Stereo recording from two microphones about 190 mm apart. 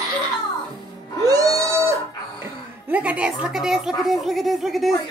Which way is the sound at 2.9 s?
5° right (ahead or behind).